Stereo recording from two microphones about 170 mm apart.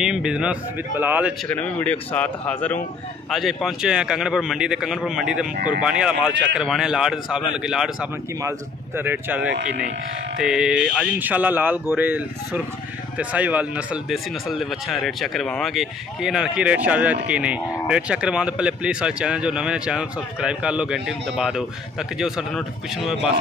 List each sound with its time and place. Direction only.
0.0 s speech: 5° right (ahead or behind)
1.5 s speech: 10° left (ahead or behind)
5.5 s speech: 50° right (ahead or behind)
5.8 s speech: 5° right (ahead or behind)
8.4 s speech: 15° right (ahead or behind)
9.5 s speech: 75° right (ahead or behind)
10.4 s speech: 5° right (ahead or behind)